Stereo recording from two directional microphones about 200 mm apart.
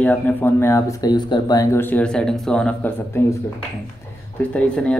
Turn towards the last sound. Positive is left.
turn(degrees=5)  # may be behind; listen again after turning